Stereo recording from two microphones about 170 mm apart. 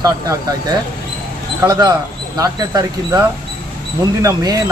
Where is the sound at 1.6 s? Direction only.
25° right (ahead or behind).